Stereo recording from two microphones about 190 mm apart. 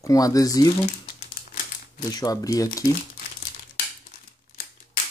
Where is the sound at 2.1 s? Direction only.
20° left (ahead or behind).